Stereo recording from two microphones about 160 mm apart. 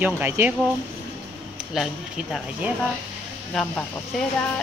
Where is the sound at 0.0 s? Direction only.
10° right (ahead or behind).